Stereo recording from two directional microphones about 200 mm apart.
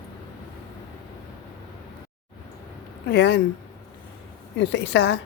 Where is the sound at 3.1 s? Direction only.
55° left (ahead or behind).